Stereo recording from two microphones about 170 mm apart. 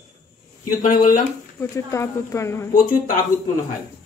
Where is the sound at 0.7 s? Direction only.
55° left (ahead or behind).